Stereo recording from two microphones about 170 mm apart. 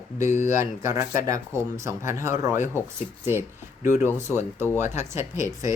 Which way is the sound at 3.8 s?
15° right (ahead or behind).